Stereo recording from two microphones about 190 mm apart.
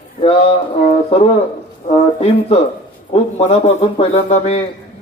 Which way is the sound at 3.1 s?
35° left (ahead or behind).